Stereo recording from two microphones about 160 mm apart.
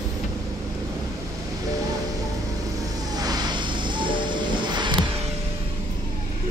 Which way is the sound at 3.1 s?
25° right (ahead or behind).